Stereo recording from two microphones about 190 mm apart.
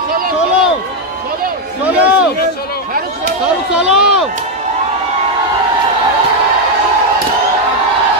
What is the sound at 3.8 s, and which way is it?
Speech, 5° right (ahead or behind).